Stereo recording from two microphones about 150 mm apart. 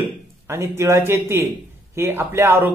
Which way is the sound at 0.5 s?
15° right (ahead or behind).